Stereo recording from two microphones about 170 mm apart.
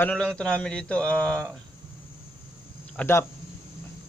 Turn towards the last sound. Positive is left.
turn(degrees=15)  # may be behind; listen again after turning